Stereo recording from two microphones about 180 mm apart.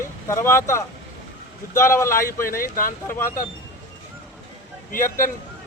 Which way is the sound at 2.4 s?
50° left (ahead or behind).